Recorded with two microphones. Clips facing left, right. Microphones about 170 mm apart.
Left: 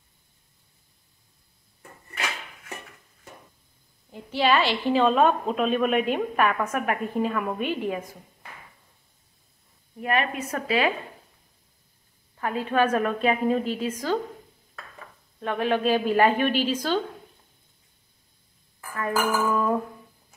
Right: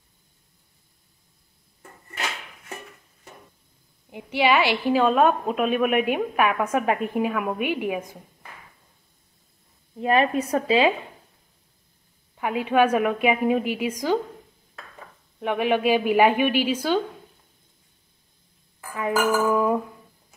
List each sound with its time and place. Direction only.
4.1 s a woman's voice: 15° right (ahead or behind)
6.7 s a woman's voice: 20° right (ahead or behind)
7.2 s a woman's voice: 10° right (ahead or behind)
9.9 s a woman's voice: 30° right (ahead or behind)
12.4 s a woman's voice: 15° right (ahead or behind)
15.4 s a woman's voice: 15° right (ahead or behind)
18.9 s a woman's voice: 15° right (ahead or behind)